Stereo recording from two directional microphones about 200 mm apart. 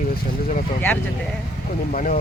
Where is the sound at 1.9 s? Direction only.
40° left (ahead or behind).